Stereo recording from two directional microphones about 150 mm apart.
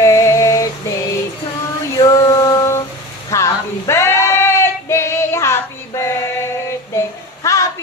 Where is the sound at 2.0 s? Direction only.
25° left (ahead or behind).